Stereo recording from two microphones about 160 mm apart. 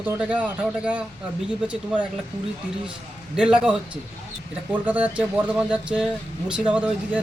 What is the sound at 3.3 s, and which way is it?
A man's voice, 5° right (ahead or behind).